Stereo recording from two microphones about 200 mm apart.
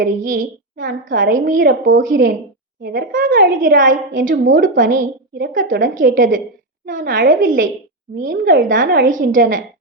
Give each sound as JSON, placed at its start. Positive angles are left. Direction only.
{"t": 0.0, "sound": "a woman's voice", "side_deg": -45}